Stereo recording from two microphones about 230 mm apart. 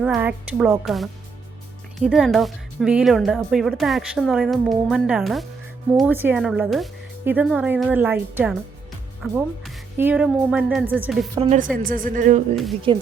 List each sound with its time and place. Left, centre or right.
0.0 s speech: centre
11.3 s a woman's voice: right
12.9 s speech: right